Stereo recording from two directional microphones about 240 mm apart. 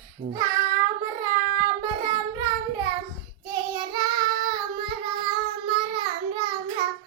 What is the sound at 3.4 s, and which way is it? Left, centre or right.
Child singing, centre.